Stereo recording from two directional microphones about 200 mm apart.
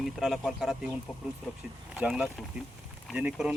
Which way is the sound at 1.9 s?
5° right (ahead or behind).